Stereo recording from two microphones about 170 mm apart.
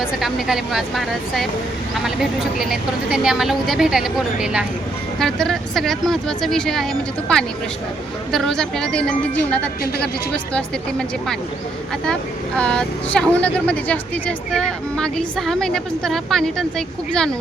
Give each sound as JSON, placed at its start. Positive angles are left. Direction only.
{"t": 0.0, "sound": "speech", "side_deg": 0}
{"t": 2.6, "sound": "speech", "side_deg": -5}
{"t": 12.5, "sound": "speech", "side_deg": 5}